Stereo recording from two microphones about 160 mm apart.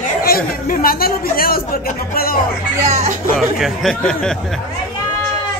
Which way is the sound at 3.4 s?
Centre (ahead or behind).